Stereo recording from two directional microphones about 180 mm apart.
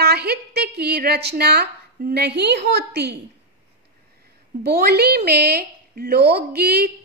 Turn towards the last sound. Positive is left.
turn(degrees=-60)  # may be behind; listen again after turning